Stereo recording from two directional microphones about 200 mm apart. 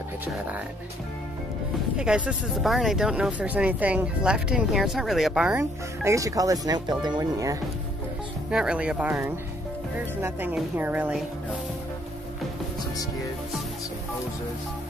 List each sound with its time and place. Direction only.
2.0 s speech: 5° right (ahead or behind)
5.6 s speech: 15° right (ahead or behind)
8.5 s speech: 5° right (ahead or behind)